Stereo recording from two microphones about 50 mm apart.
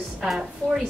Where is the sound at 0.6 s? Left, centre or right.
Left.